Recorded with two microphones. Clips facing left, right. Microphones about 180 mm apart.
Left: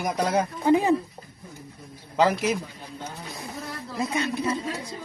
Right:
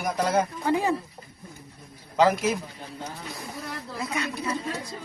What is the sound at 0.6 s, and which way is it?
Speech, 20° left (ahead or behind).